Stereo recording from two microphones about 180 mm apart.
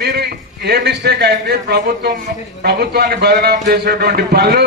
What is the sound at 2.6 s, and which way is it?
A man's voice, 60° right (ahead or behind).